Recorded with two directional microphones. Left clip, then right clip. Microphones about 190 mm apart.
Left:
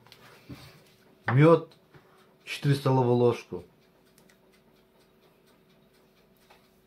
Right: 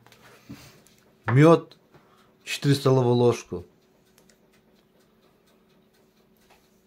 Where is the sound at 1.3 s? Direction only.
70° right (ahead or behind).